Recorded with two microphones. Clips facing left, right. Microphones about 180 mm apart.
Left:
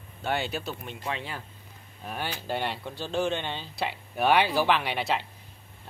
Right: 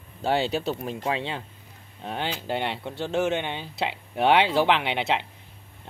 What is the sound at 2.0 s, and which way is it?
Speech, 20° right (ahead or behind).